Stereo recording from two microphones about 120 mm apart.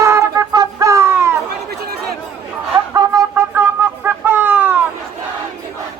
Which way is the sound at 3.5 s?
20° right (ahead or behind).